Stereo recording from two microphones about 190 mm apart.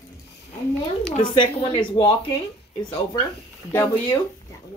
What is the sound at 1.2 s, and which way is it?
Speech, 25° left (ahead or behind).